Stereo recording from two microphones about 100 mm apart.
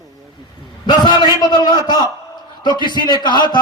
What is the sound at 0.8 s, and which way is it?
Speech, 50° left (ahead or behind).